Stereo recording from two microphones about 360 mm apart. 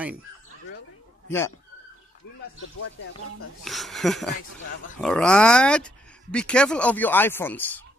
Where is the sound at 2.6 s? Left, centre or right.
Left.